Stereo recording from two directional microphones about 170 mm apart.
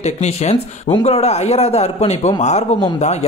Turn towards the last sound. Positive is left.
turn(degrees=40)  # may be behind; listen again after turning